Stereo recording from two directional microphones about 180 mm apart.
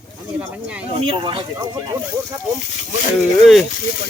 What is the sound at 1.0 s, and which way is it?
Speech, 30° right (ahead or behind).